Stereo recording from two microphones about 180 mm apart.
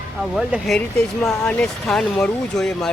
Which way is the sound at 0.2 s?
5° right (ahead or behind).